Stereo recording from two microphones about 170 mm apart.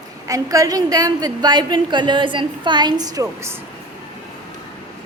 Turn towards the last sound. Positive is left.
turn(degrees=-15)  # may be behind; listen again after turning